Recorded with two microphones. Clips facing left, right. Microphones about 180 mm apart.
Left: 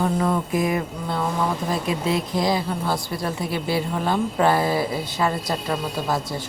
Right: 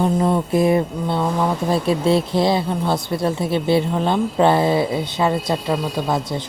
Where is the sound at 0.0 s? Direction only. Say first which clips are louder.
Right 4 dB; 25° right (ahead or behind).